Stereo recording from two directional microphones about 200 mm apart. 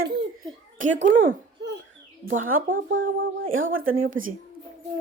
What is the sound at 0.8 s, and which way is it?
Speech, 70° right (ahead or behind).